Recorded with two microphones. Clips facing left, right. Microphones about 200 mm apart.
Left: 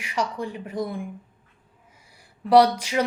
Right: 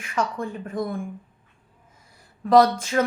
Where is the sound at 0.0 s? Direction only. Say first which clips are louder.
Right 1 dB; 15° left (ahead or behind).